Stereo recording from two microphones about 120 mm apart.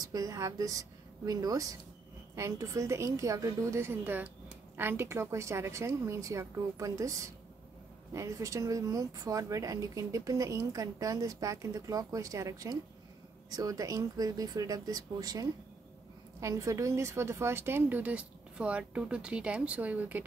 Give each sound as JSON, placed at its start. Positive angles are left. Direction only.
{"t": 0.1, "sound": "a woman's voice", "side_deg": -30}